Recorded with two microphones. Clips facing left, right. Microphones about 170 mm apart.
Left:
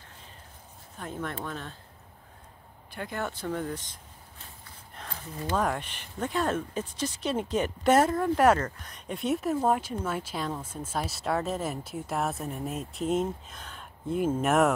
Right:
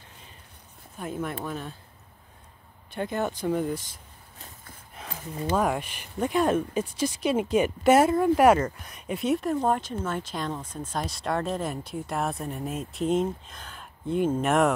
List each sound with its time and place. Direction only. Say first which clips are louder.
0.9 s speech: right 3 dB; 10° right (ahead or behind)
2.9 s speech: right 5 dB; 20° right (ahead or behind); by 14.7 s centre (ahead or behind)